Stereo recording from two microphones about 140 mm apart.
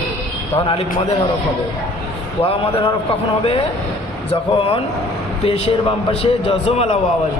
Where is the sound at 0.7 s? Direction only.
40° left (ahead or behind).